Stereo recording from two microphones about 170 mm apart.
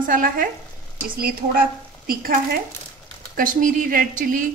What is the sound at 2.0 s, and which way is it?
A woman's voice, 60° right (ahead or behind).